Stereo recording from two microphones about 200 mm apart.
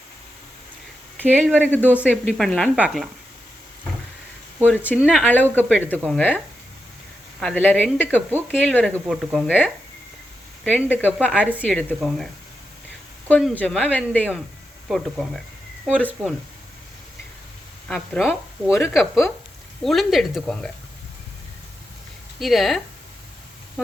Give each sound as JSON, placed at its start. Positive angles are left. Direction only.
{"t": 1.4, "sound": "speech", "side_deg": 5}
{"t": 2.0, "sound": "speech", "side_deg": 0}
{"t": 4.7, "sound": "speech", "side_deg": 10}
{"t": 10.8, "sound": "speech", "side_deg": 10}
{"t": 17.8, "sound": "speech", "side_deg": 0}
{"t": 22.4, "sound": "speech", "side_deg": 0}